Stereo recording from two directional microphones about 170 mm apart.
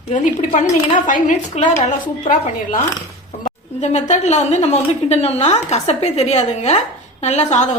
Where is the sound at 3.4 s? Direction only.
45° left (ahead or behind).